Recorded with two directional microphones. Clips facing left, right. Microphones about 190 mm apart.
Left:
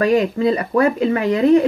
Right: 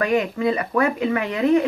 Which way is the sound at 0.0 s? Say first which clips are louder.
Left 5 dB; 35° left (ahead or behind).